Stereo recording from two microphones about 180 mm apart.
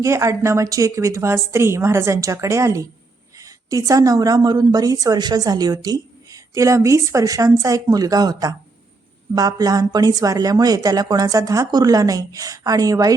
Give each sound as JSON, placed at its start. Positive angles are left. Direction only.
{"t": 0.0, "sound": "a woman's voice", "side_deg": -15}